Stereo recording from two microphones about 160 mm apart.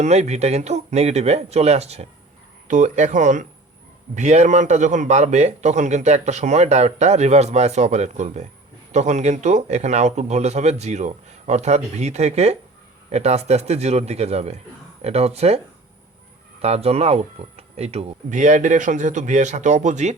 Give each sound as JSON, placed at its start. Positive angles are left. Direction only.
{"t": 0.0, "sound": "a man's voice", "side_deg": -45}